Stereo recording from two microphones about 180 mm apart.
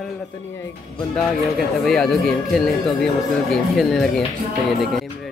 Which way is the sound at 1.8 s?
Centre (ahead or behind).